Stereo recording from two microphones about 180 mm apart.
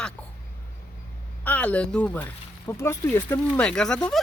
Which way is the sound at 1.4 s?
10° left (ahead or behind).